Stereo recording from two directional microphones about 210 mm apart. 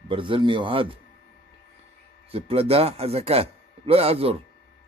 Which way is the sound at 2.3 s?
30° right (ahead or behind).